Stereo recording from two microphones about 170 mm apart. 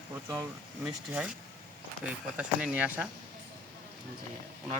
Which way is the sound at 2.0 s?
5° right (ahead or behind).